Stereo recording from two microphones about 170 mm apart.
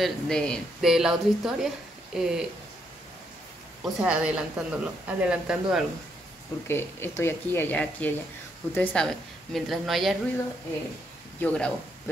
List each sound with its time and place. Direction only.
0.0 s a woman's voice: 5° left (ahead or behind)
3.8 s a woman's voice: 5° right (ahead or behind)
6.7 s a woman's voice: 15° left (ahead or behind)
11.4 s speech: 5° left (ahead or behind)